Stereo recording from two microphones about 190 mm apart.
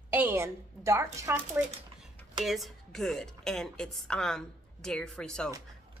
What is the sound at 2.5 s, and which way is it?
A woman's voice, centre (ahead or behind).